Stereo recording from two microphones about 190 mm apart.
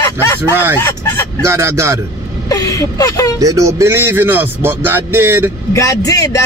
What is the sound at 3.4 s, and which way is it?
Speech, 15° right (ahead or behind).